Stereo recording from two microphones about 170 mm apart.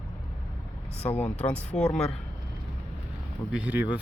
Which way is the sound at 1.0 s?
10° left (ahead or behind).